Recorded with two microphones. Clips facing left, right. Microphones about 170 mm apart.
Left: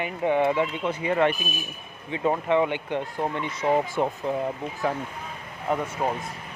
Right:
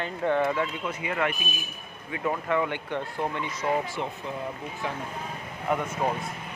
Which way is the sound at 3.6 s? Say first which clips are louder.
Left 4 dB; 40° left (ahead or behind).